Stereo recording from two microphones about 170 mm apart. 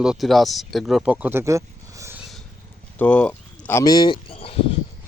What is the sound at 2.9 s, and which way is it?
Speech, 10° left (ahead or behind).